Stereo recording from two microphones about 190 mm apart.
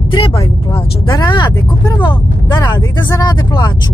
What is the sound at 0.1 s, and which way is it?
Speech, 25° left (ahead or behind).